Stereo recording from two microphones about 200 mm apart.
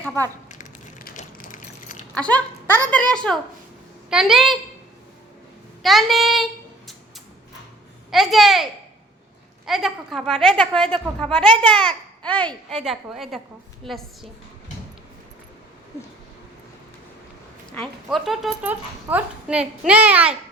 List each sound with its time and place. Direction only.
0.4 s a sound: 40° left (ahead or behind)
2.1 s a woman's voice: 5° left (ahead or behind)
5.8 s a sound: centre (ahead or behind)
8.1 s a woman's voice: centre (ahead or behind)
9.6 s a woman's voice: centre (ahead or behind)
17.7 s a woman's voice: centre (ahead or behind)